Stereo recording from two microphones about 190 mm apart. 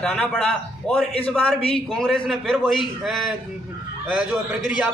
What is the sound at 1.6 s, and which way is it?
Speech, 30° left (ahead or behind).